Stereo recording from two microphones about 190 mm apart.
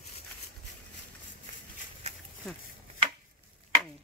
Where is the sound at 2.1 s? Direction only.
35° right (ahead or behind).